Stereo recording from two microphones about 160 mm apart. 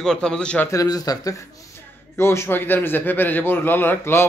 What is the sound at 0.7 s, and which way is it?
A man's voice, 20° left (ahead or behind).